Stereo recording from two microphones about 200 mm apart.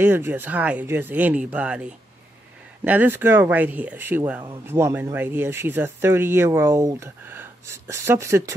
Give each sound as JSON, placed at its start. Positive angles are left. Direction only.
{"t": 0.0, "sound": "speech", "side_deg": -10}